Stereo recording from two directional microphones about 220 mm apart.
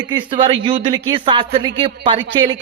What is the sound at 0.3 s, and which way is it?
A man's voice, 25° right (ahead or behind).